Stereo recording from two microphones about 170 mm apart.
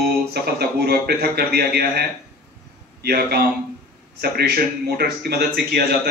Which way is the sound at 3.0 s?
70° right (ahead or behind).